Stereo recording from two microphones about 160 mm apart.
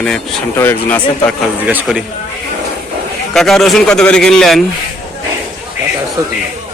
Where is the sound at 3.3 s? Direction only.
Centre (ahead or behind).